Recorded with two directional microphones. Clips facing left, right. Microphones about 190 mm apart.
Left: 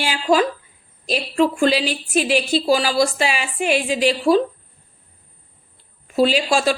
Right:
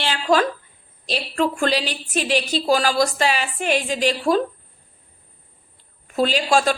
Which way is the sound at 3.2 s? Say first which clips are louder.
Even; 40° right (ahead or behind).